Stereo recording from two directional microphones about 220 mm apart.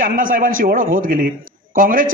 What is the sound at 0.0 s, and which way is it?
A man's voice, 40° right (ahead or behind).